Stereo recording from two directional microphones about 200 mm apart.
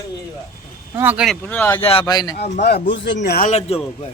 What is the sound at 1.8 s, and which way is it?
Speech, 30° left (ahead or behind).